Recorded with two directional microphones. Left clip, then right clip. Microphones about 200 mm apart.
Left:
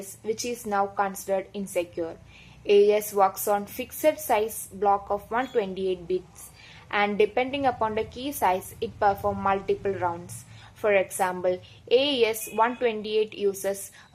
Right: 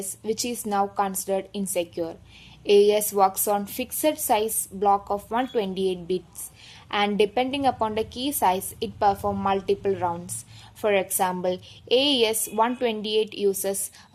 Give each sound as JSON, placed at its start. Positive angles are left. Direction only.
{"t": 0.3, "sound": "a woman's voice", "side_deg": -30}